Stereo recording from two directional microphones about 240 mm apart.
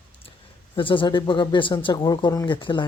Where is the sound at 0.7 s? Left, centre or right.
Left.